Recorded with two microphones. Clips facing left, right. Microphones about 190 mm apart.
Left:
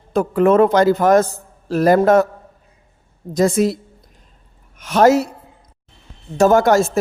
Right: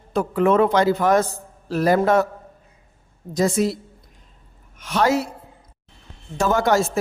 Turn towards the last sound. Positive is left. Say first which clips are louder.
# left 5 dB
turn(degrees=45)  # may be behind; listen again after turning